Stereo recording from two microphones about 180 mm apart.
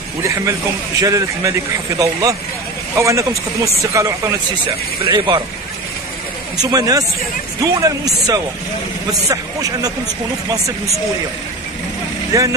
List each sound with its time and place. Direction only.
0.2 s a man's voice: 15° right (ahead or behind)
6.6 s a man's voice: 20° right (ahead or behind)
12.3 s a man's voice: 20° right (ahead or behind)